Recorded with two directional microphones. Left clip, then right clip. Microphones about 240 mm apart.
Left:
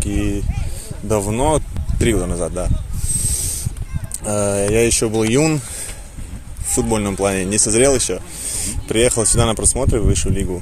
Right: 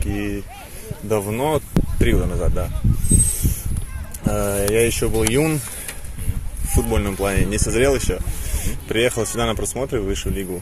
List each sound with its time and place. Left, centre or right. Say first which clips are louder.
0.0 s speech: left 3 dB; left
4.2 s speech: left 3 dB; left
6.7 s speech: left 3 dB; left